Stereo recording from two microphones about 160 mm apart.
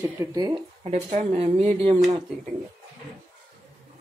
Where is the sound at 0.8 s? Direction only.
45° right (ahead or behind).